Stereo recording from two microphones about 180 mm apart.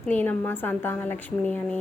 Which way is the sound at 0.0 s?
10° left (ahead or behind).